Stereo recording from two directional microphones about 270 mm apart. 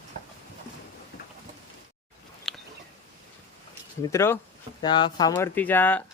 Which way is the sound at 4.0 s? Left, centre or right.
Centre.